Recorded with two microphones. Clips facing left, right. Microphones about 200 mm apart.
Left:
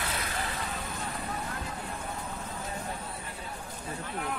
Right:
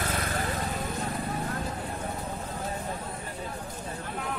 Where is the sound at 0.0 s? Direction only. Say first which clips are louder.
Right 4 dB; 50° right (ahead or behind).